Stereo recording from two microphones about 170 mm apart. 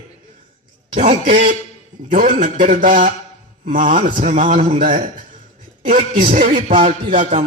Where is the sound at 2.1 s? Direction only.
55° right (ahead or behind).